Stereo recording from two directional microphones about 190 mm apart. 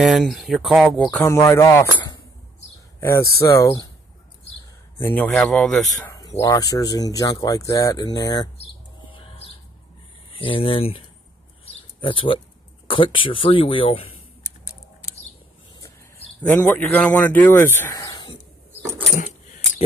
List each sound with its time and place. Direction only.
0.0 s speech: centre (ahead or behind)
1.2 s speech: 15° left (ahead or behind)
5.0 s speech: 10° left (ahead or behind)
6.3 s speech: 15° left (ahead or behind)
10.4 s speech: 30° left (ahead or behind)
11.6 s bird: 30° left (ahead or behind)
12.9 s speech: 25° left (ahead or behind)
16.4 s speech: 10° left (ahead or behind)